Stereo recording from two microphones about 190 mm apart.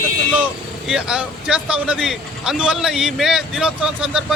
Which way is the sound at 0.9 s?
5° right (ahead or behind).